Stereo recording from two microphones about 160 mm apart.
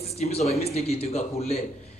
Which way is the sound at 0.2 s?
40° left (ahead or behind).